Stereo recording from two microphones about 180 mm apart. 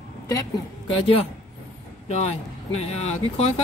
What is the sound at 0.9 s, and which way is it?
Speech, 30° left (ahead or behind).